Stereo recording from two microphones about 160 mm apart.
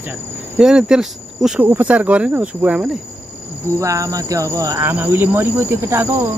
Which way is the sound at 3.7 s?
20° right (ahead or behind).